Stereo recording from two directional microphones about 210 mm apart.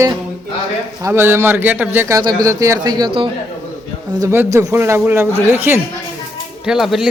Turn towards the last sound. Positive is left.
turn(degrees=0)  # may be behind; listen again after turning